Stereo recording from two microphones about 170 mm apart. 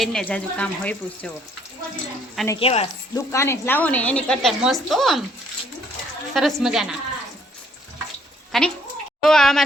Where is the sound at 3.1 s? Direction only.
15° left (ahead or behind); by 5.2 s centre (ahead or behind).